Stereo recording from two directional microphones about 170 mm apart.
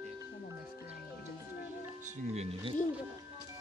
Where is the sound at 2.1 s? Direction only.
40° right (ahead or behind).